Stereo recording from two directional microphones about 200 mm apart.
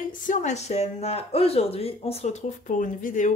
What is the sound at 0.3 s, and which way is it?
Speech, 35° left (ahead or behind).